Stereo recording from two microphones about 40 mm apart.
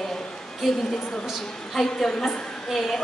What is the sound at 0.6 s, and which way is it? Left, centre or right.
Speech, centre.